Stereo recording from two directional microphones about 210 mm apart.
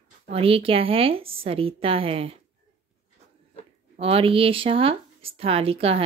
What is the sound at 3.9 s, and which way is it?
Speech, 25° right (ahead or behind).